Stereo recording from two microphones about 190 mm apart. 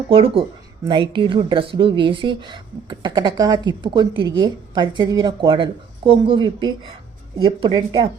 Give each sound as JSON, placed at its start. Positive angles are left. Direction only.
{"t": 0.1, "sound": "a woman's voice", "side_deg": -30}